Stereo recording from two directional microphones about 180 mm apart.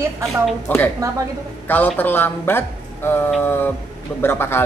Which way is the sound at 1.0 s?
15° right (ahead or behind).